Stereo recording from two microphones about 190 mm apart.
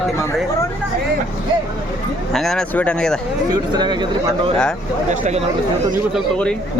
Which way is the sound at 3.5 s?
25° right (ahead or behind).